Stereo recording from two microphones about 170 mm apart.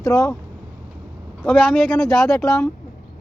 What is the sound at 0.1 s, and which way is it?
Speech, 20° left (ahead or behind).